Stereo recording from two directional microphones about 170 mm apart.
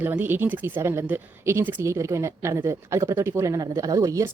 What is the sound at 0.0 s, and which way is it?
Speech, 10° right (ahead or behind).